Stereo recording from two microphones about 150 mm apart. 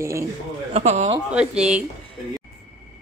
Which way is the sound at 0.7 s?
50° right (ahead or behind).